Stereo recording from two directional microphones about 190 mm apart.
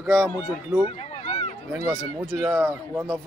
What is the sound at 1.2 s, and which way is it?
Run, 35° left (ahead or behind).